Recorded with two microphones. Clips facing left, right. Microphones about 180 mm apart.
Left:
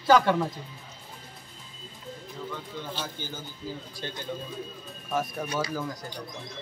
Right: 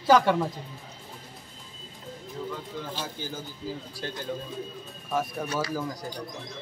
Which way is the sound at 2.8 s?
5° right (ahead or behind).